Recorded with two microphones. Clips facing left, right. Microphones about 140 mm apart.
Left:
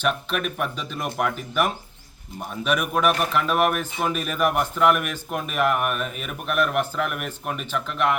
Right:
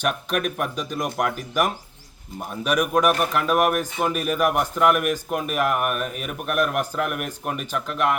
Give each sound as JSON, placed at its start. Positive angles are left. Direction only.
{"t": 0.0, "sound": "speech", "side_deg": -45}
{"t": 0.5, "sound": "speech", "side_deg": -10}
{"t": 2.4, "sound": "speech", "side_deg": -10}